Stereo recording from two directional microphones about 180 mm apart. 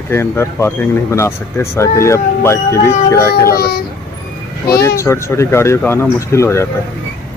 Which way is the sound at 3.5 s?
60° left (ahead or behind).